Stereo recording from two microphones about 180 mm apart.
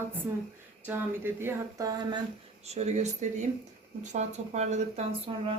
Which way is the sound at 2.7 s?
40° right (ahead or behind).